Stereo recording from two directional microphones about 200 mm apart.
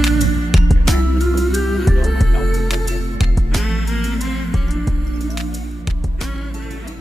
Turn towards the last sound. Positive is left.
turn(degrees=0)  # may be behind; listen again after turning